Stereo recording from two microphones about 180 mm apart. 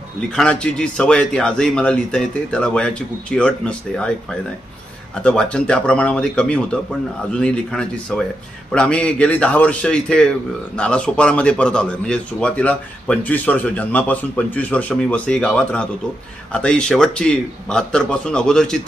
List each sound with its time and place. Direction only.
0.3 s a man's voice: 5° left (ahead or behind)